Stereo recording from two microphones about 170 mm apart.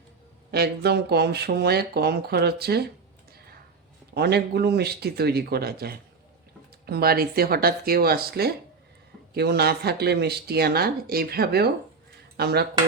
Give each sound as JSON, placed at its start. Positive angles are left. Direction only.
{"t": 0.5, "sound": "speech", "side_deg": -70}
{"t": 4.1, "sound": "speech", "side_deg": -70}